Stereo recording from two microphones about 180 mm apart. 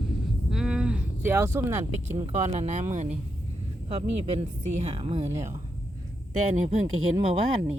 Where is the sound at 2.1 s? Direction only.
35° right (ahead or behind).